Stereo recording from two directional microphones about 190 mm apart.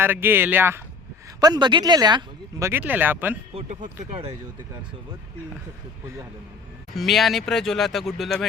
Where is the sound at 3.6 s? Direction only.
40° right (ahead or behind).